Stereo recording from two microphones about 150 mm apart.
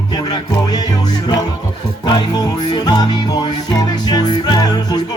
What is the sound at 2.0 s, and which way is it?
Music, 25° left (ahead or behind).